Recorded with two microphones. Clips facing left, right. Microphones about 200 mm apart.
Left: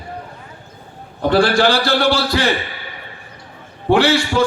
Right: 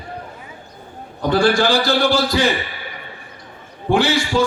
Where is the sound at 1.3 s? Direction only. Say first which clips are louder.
Left 1 dB; 65° left (ahead or behind).